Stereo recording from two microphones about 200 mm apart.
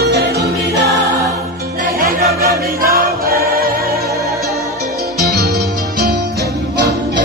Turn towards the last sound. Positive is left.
turn(degrees=-55)  # may be behind; listen again after turning